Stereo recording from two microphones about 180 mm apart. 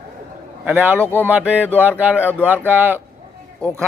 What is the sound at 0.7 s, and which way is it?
Speech, 10° right (ahead or behind).